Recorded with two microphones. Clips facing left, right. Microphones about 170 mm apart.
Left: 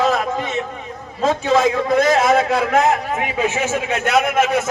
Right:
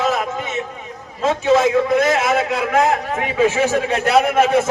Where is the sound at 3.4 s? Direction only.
35° right (ahead or behind).